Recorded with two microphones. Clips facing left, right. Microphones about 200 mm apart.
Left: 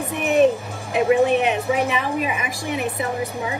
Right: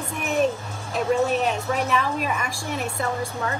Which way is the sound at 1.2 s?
60° left (ahead or behind).